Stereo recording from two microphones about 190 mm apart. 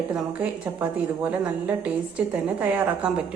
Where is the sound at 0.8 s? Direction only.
5° right (ahead or behind).